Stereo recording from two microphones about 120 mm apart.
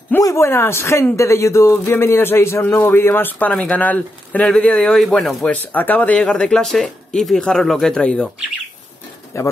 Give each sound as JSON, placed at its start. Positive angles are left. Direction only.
{"t": 0.2, "sound": "speech", "side_deg": 25}
{"t": 9.3, "sound": "speech", "side_deg": 25}